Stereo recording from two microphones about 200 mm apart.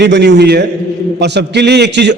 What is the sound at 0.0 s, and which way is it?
A man's voice, 60° right (ahead or behind).